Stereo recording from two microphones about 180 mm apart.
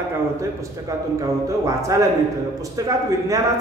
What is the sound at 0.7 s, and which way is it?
A man's voice, 20° right (ahead or behind).